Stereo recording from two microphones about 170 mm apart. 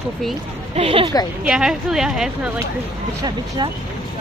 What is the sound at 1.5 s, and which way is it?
A woman's voice, 5° right (ahead or behind).